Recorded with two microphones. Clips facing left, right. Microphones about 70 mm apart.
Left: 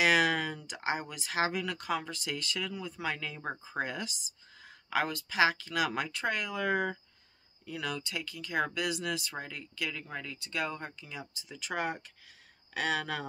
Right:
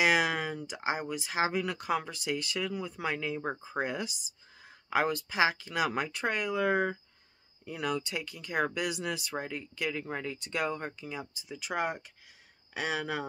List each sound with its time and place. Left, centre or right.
0.0 s a sound: centre
0.6 s speech: centre; by 10.6 s right
10.9 s speech: centre